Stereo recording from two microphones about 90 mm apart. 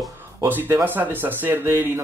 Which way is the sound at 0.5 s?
20° right (ahead or behind).